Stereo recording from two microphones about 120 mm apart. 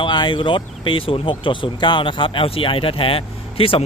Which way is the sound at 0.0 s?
40° left (ahead or behind).